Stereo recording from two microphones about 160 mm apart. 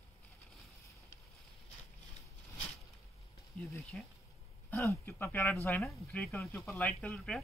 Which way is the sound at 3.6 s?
15° left (ahead or behind).